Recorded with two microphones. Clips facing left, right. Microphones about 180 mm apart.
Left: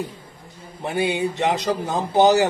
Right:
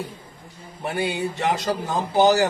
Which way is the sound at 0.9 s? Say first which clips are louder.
Left 3 dB; 20° left (ahead or behind).